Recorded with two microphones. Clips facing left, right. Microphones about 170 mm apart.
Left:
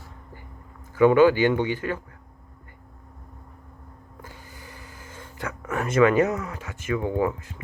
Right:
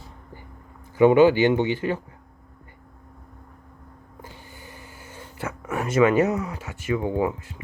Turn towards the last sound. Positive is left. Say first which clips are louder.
# right 1 dB
turn(degrees=-20)  # may be behind; listen again after turning